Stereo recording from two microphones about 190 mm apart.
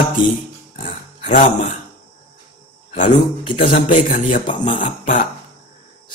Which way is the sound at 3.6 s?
40° left (ahead or behind).